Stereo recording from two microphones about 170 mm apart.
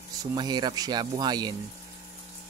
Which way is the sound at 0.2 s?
20° right (ahead or behind).